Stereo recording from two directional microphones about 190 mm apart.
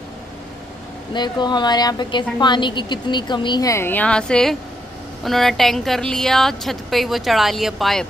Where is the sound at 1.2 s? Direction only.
25° left (ahead or behind); by 8.0 s centre (ahead or behind).